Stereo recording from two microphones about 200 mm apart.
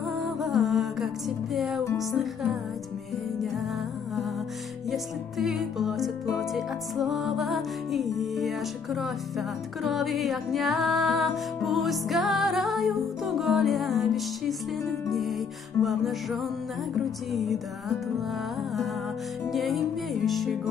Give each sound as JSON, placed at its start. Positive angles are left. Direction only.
{"t": 0.0, "sound": "music", "side_deg": 0}
{"t": 4.9, "sound": "music", "side_deg": 0}
{"t": 19.5, "sound": "music", "side_deg": 0}